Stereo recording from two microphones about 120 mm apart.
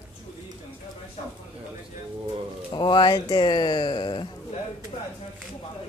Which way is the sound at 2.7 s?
40° left (ahead or behind).